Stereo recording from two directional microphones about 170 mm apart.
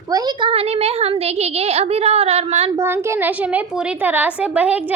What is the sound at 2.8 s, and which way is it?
A woman's voice, 15° right (ahead or behind).